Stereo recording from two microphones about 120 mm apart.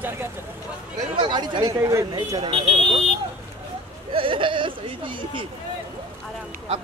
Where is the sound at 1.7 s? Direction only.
25° right (ahead or behind).